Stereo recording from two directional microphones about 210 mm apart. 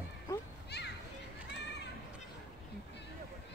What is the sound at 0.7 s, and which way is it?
Children playing, 50° left (ahead or behind).